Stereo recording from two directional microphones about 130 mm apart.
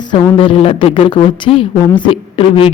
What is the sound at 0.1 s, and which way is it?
A woman's voice, 45° left (ahead or behind).